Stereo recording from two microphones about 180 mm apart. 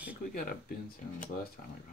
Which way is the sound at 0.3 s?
55° left (ahead or behind).